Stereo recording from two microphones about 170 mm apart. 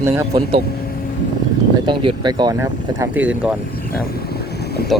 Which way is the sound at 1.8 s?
25° right (ahead or behind).